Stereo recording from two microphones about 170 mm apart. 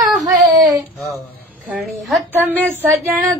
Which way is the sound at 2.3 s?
10° right (ahead or behind).